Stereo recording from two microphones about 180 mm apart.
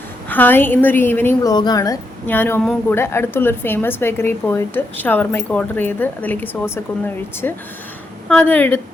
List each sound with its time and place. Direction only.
0.3 s speech: 10° left (ahead or behind)
1.5 s speech: 20° left (ahead or behind)